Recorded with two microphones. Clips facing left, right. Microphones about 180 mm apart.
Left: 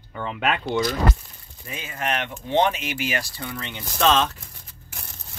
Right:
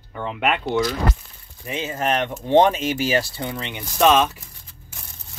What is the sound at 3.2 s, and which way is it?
Speech, 25° right (ahead or behind).